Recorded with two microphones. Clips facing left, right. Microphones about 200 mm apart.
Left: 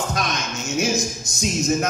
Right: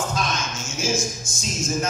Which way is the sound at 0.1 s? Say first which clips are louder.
Left 1 dB; 65° left (ahead or behind).